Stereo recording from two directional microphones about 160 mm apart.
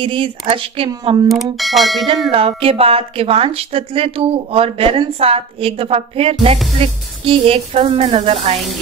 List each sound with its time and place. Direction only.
0.0 s a woman's voice: 35° right (ahead or behind)
1.3 s speech: centre (ahead or behind)
2.3 s a woman's voice: 35° right (ahead or behind)